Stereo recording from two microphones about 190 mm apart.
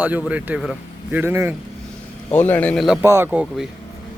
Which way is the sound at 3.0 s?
10° right (ahead or behind).